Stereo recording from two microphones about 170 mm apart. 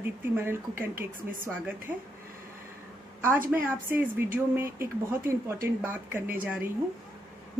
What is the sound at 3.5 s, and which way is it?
Speech, 10° right (ahead or behind).